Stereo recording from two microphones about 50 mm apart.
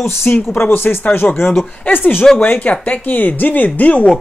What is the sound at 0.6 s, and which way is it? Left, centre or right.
Speech, left.